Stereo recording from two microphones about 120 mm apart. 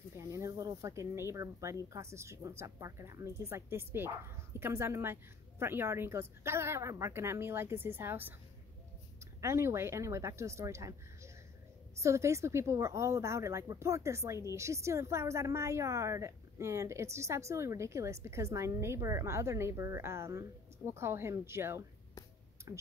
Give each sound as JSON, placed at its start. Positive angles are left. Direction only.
{"t": 0.2, "sound": "a woman's voice", "side_deg": -25}
{"t": 9.4, "sound": "a woman's voice", "side_deg": -20}